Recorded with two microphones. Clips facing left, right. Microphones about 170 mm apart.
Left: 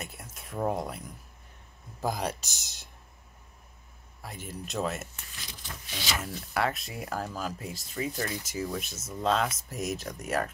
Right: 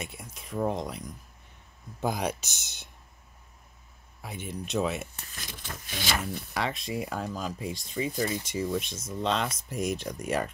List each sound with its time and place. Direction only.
0.0 s speech: centre (ahead or behind)
4.2 s speech: centre (ahead or behind)
5.1 s speech: 45° right (ahead or behind)
6.5 s speech: centre (ahead or behind)